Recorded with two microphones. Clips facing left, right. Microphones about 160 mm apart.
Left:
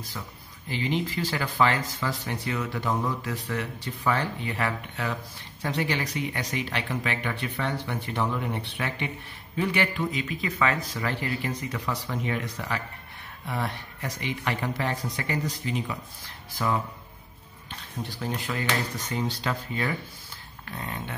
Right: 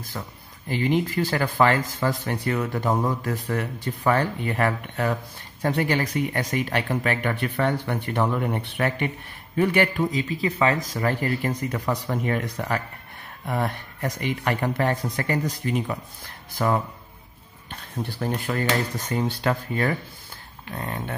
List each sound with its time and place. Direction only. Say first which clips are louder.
0.7 s a man's voice: right 5 dB; 50° right (ahead or behind)
18.0 s a man's voice: right 5 dB; 45° right (ahead or behind)
20.7 s a sound: right 4 dB; 60° right (ahead or behind)